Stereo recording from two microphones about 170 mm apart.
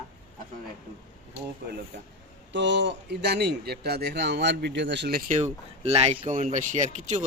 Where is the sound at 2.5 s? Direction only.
90° right.